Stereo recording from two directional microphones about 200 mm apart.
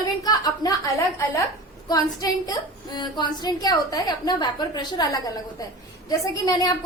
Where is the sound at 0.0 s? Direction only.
20° left (ahead or behind).